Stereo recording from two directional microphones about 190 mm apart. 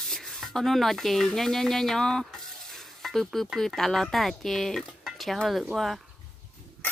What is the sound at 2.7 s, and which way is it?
Speech, centre (ahead or behind).